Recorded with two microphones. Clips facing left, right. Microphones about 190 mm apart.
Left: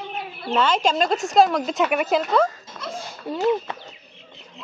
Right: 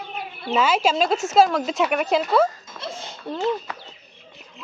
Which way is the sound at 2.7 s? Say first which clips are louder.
Left 1 dB; 25° right (ahead or behind).